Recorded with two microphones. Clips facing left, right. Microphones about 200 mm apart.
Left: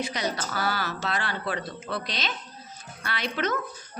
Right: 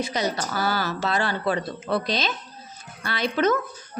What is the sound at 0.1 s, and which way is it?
A woman's voice, 35° right (ahead or behind).